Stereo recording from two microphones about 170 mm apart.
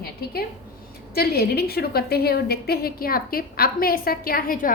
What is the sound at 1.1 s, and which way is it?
A woman's voice, 65° left (ahead or behind).